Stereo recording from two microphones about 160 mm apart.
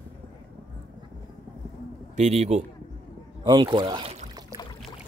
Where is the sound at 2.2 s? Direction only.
45° right (ahead or behind).